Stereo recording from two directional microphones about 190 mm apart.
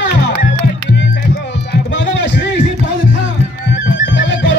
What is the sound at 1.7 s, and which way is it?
Music, 65° left (ahead or behind).